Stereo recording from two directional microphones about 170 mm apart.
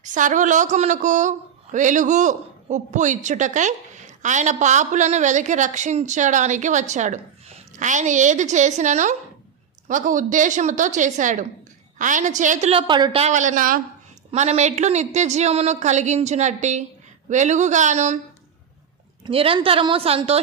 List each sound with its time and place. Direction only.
0.0 s a man's voice: 50° right (ahead or behind)
12.9 s a woman's voice: 25° right (ahead or behind)
13.2 s a man's voice: 45° right (ahead or behind)
14.3 s a man's voice: 40° right (ahead or behind)
19.2 s a woman's voice: 35° right (ahead or behind)